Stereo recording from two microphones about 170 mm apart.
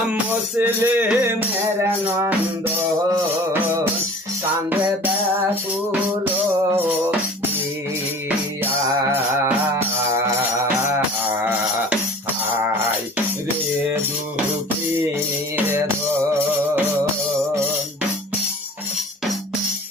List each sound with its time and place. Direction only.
0.6 s music: 10° right (ahead or behind)
9.1 s music: 15° right (ahead or behind)
10.8 s music: 10° right (ahead or behind)